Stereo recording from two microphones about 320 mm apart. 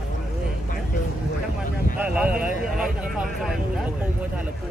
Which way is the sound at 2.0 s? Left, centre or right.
Centre.